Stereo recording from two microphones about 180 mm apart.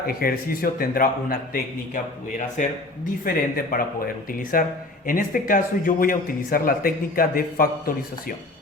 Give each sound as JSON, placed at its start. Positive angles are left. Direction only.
{"t": 0.1, "sound": "a man's voice", "side_deg": 55}
{"t": 2.6, "sound": "speech", "side_deg": 45}